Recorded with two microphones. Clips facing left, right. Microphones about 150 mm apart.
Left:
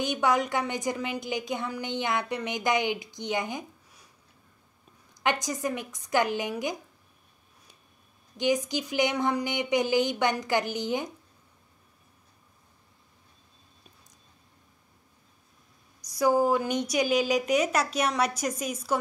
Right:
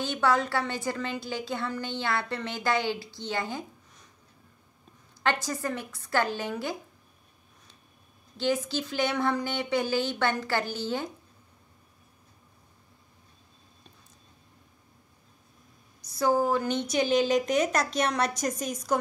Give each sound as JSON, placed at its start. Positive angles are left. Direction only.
{"t": 0.0, "sound": "a woman's voice", "side_deg": 15}
{"t": 5.2, "sound": "a woman's voice", "side_deg": 15}
{"t": 8.4, "sound": "a woman's voice", "side_deg": 15}
{"t": 16.0, "sound": "a woman's voice", "side_deg": 10}